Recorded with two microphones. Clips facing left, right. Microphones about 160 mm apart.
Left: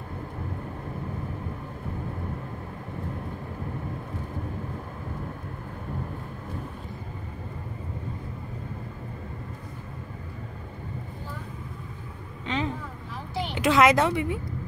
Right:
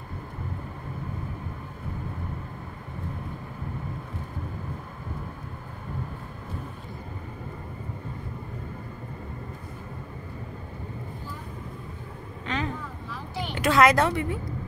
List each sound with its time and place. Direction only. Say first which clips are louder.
12.4 s vehicle: left 1 dB; 20° left (ahead or behind)
13.6 s a woman's voice: even; 20° left (ahead or behind)